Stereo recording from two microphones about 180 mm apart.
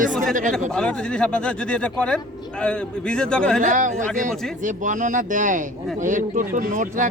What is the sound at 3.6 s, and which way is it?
A man's voice, 45° right (ahead or behind).